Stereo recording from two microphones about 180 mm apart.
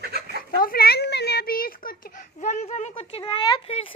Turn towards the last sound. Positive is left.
turn(degrees=30)  # may be behind; listen again after turning